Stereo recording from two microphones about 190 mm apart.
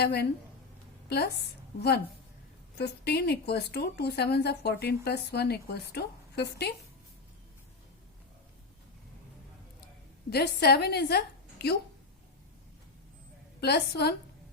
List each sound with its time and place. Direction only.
0.0 s a woman's voice: 55° left (ahead or behind)
2.7 s a woman's voice: 60° left (ahead or behind)
10.2 s a woman's voice: 55° left (ahead or behind)
13.6 s a woman's voice: 60° left (ahead or behind)